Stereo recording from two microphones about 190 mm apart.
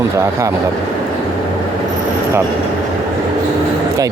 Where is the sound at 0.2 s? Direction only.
15° right (ahead or behind).